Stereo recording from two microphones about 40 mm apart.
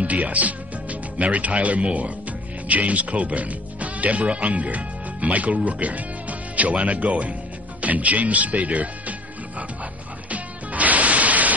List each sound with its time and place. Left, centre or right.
0.0 s speech: right
10.3 s music: right